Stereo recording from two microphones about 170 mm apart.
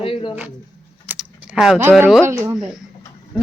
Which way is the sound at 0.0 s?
30° left (ahead or behind).